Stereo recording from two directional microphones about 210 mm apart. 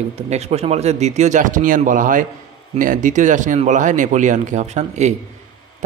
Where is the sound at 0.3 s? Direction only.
30° right (ahead or behind).